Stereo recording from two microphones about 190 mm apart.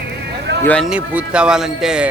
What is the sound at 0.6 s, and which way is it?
Speech, 5° left (ahead or behind).